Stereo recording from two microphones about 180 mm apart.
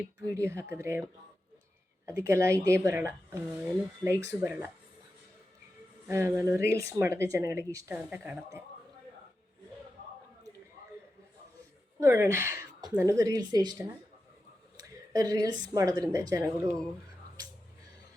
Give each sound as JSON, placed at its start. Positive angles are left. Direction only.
{"t": 0.3, "sound": "speech", "side_deg": -15}
{"t": 2.0, "sound": "speech", "side_deg": -15}
{"t": 6.1, "sound": "speech", "side_deg": -15}
{"t": 11.9, "sound": "speech", "side_deg": -15}
{"t": 14.8, "sound": "a woman's voice", "side_deg": -20}